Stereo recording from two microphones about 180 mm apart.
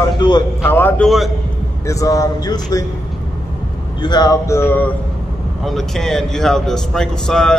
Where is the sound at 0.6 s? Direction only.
10° left (ahead or behind).